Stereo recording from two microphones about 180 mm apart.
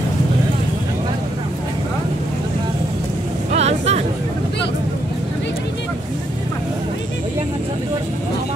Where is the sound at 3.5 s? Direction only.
35° right (ahead or behind).